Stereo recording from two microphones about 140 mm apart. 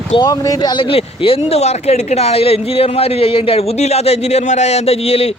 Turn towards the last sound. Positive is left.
turn(degrees=45)  # may be behind; listen again after turning